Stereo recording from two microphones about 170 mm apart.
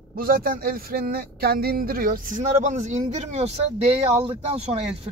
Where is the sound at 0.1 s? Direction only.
60° right (ahead or behind).